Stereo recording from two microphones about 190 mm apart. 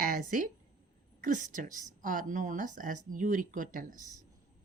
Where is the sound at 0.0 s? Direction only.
45° right (ahead or behind).